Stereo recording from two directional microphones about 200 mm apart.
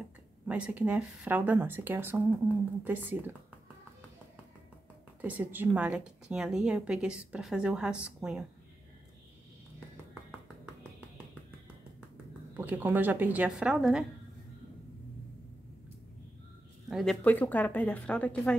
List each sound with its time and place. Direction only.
0.5 s speech: 5° right (ahead or behind)
5.2 s speech: 10° right (ahead or behind)
12.5 s speech: 10° right (ahead or behind)
16.9 s speech: 5° left (ahead or behind)